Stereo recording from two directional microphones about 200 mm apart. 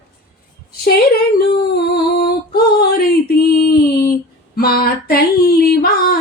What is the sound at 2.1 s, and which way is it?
A woman's voice, 50° left (ahead or behind).